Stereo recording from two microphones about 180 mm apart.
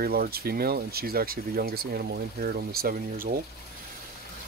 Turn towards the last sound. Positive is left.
turn(degrees=-55)  # may be behind; listen again after turning